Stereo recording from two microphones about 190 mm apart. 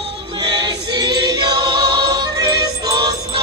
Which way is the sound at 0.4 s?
20° right (ahead or behind).